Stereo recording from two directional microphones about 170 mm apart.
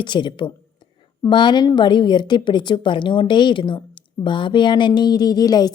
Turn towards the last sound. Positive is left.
turn(degrees=25)  # may be behind; listen again after turning